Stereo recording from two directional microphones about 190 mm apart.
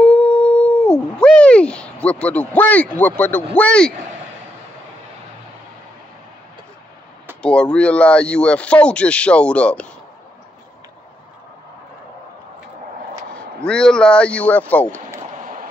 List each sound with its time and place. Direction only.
0.0 s speech: 5° left (ahead or behind)
7.4 s speech: 5° left (ahead or behind)
13.3 s speech: 5° left (ahead or behind)
15.3 s a sound: 45° right (ahead or behind)